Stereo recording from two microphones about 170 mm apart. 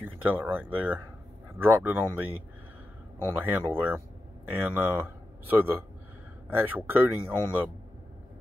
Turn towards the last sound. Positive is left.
turn(degrees=-10)  # may be behind; listen again after turning